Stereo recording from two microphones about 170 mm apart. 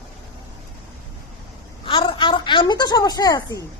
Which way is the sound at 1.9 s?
30° left (ahead or behind).